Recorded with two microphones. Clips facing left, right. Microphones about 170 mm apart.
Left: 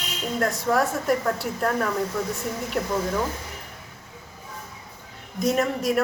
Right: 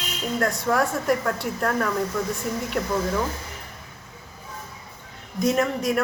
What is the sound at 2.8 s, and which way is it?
Speech, 25° left (ahead or behind).